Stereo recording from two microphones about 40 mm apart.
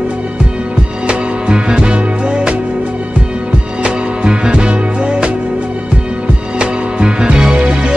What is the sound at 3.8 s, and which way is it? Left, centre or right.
Music, right.